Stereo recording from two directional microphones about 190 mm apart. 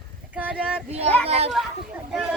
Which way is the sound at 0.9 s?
30° right (ahead or behind).